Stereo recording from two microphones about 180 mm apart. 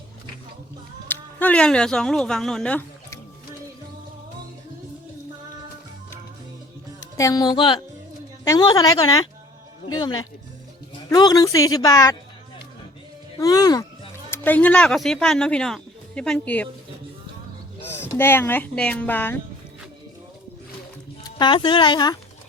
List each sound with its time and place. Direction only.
1.1 s speech: 10° left (ahead or behind)
7.2 s speech: 20° left (ahead or behind)
11.1 s speech: 20° left (ahead or behind)
13.4 s speech: 20° left (ahead or behind)
18.2 s speech: 10° left (ahead or behind)
21.2 s speech: 25° left (ahead or behind)